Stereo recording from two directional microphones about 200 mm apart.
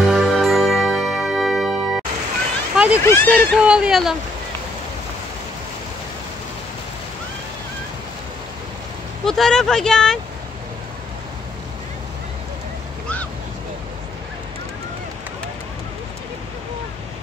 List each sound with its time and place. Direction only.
0.0 s music: centre (ahead or behind)
2.7 s a sound: 5° right (ahead or behind)
3.0 s speech: 10° left (ahead or behind)
3.6 s speech: 5° right (ahead or behind)
9.2 s speech: centre (ahead or behind)